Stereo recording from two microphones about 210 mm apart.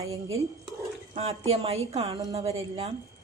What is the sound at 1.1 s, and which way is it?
A woman's voice, 30° right (ahead or behind).